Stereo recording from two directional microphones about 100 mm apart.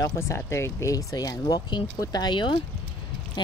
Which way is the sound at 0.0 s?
30° left (ahead or behind).